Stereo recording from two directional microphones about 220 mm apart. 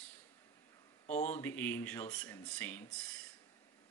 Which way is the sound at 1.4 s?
10° left (ahead or behind).